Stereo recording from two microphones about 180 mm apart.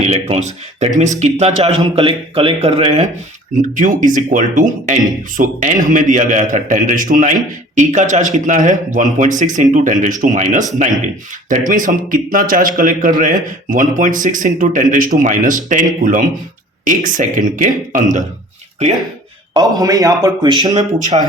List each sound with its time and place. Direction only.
0.1 s speech: 35° right (ahead or behind)
3.5 s a man's voice: 45° right (ahead or behind)
19.5 s speech: 20° right (ahead or behind)
20.7 s speech: 40° right (ahead or behind)